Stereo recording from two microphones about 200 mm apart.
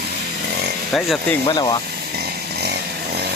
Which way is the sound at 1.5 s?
20° left (ahead or behind).